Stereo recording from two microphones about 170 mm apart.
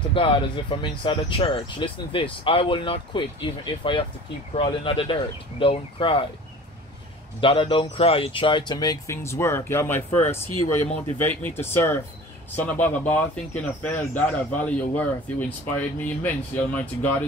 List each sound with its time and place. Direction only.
0.1 s speech: 30° left (ahead or behind)
7.3 s speech: 30° left (ahead or behind); by 17.2 s 10° left (ahead or behind)